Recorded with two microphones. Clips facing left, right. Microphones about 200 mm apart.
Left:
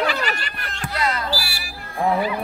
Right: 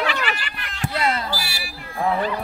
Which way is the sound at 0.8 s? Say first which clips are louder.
Right 1 dB; 25° right (ahead or behind).